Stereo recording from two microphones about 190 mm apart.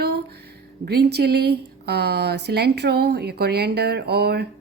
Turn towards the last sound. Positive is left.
turn(degrees=-60)  # may be behind; listen again after turning